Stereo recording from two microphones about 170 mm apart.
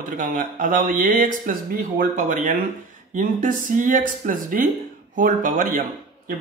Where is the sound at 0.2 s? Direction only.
50° right (ahead or behind).